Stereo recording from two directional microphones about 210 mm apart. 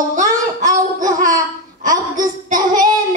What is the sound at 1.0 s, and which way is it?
Laughter, 35° right (ahead or behind).